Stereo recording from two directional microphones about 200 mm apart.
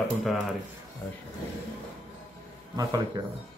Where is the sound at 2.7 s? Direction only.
20° right (ahead or behind).